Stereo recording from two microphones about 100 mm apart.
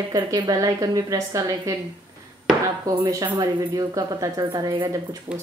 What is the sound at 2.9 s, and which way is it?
Speech, 35° right (ahead or behind).